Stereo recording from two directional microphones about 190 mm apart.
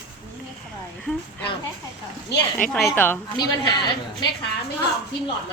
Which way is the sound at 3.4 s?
25° left (ahead or behind).